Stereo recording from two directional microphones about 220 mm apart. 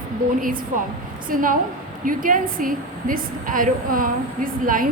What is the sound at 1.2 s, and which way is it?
A woman's voice, 40° right (ahead or behind).